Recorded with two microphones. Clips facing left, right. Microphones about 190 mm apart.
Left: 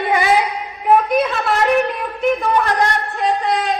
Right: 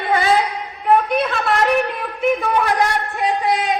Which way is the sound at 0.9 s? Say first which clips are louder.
Left 2 dB; 5° left (ahead or behind).